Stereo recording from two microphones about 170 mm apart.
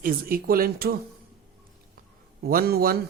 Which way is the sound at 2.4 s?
60° right (ahead or behind).